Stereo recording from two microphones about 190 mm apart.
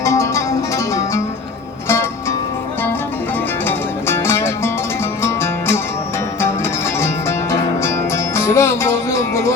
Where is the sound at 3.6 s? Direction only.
15° left (ahead or behind).